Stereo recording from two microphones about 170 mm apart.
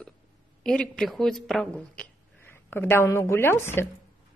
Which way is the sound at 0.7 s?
5° left (ahead or behind).